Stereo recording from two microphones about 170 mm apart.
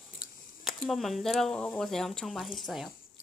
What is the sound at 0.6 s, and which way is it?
Speech, centre (ahead or behind).